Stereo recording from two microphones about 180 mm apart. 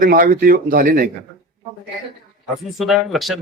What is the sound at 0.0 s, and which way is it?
Speech, 50° right (ahead or behind).